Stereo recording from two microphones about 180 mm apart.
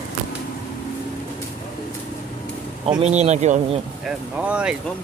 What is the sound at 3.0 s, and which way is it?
Speech, 40° right (ahead or behind).